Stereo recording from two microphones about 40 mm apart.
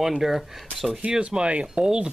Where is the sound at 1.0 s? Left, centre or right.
Right.